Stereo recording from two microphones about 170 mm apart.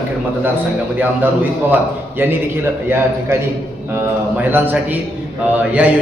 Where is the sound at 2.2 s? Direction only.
15° right (ahead or behind).